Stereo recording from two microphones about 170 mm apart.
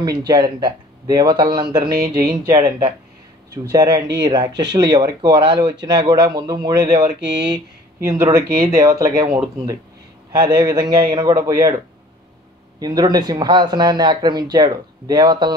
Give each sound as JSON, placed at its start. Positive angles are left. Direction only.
{"t": 0.0, "sound": "speech", "side_deg": -25}
{"t": 1.9, "sound": "speech", "side_deg": -65}
{"t": 2.2, "sound": "speech", "side_deg": -25}
{"t": 7.2, "sound": "speech", "side_deg": -90}
{"t": 7.5, "sound": "speech", "side_deg": -20}
{"t": 10.3, "sound": "speech", "side_deg": -25}